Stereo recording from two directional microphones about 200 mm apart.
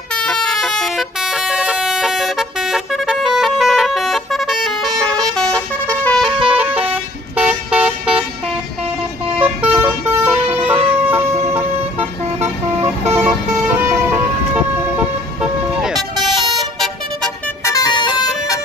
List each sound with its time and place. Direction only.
0.1 s vehicle horn: 5° left (ahead or behind)
7.3 s vehicle: 5° right (ahead or behind)
9.4 s vehicle: 10° right (ahead or behind)
16.5 s vehicle: centre (ahead or behind)
17.6 s music: 20° left (ahead or behind)